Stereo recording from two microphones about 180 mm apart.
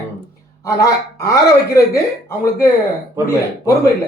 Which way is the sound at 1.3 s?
15° left (ahead or behind).